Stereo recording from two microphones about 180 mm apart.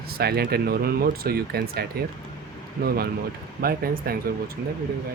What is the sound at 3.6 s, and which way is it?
Speech, 55° right (ahead or behind).